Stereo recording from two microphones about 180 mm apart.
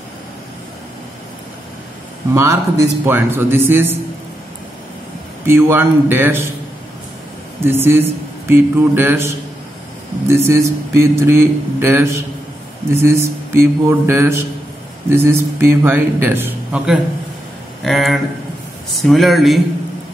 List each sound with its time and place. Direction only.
2.3 s speech: 15° right (ahead or behind)
5.4 s speech: 15° right (ahead or behind)
7.6 s speech: 10° right (ahead or behind)